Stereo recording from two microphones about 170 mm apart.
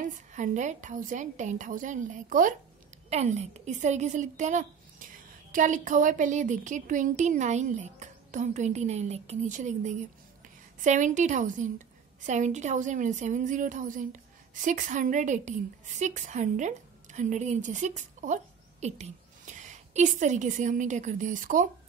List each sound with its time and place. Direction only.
0.0 s speech: 45° right (ahead or behind)
3.1 s a woman's voice: 40° right (ahead or behind)